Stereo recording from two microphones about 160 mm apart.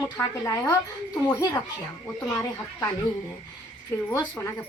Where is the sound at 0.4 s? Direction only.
20° left (ahead or behind).